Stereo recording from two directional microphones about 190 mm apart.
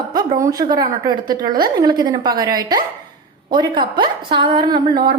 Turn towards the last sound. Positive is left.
turn(degrees=-25)  # may be behind; listen again after turning